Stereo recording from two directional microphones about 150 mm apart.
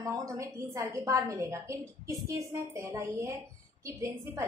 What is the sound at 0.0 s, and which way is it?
A woman's voice, 20° right (ahead or behind).